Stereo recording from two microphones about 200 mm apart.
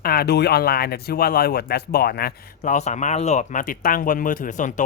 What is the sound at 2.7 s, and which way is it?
Speech, 35° left (ahead or behind).